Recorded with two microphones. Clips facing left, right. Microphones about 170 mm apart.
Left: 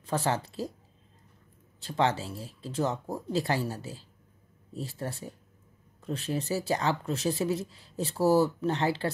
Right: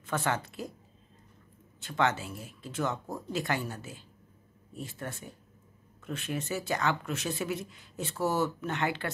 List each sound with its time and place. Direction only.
0.0 s speech: 35° left (ahead or behind)
1.8 s speech: 30° left (ahead or behind)